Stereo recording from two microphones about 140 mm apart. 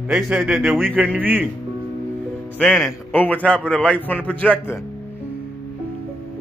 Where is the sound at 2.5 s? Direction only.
5° left (ahead or behind).